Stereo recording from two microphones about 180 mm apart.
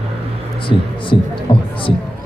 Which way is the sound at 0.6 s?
30° left (ahead or behind).